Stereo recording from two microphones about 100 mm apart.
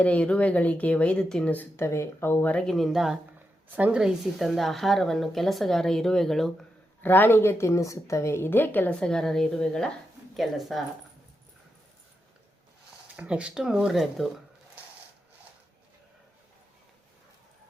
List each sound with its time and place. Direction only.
0.0 s speech: 10° left (ahead or behind)
1.8 s a woman's voice: 30° left (ahead or behind)
2.6 s speech: centre (ahead or behind)
3.3 s speech: 15° right (ahead or behind); by 6.5 s 5° left (ahead or behind)
7.0 s a woman's voice: 20° left (ahead or behind)
9.0 s speech: 5° left (ahead or behind)
13.1 s speech: 10° right (ahead or behind)